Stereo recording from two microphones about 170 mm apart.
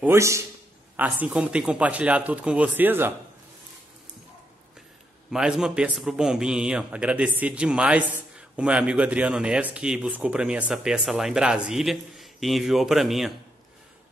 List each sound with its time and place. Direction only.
0.0 s speech: 15° right (ahead or behind)
5.3 s a man's voice: 5° right (ahead or behind)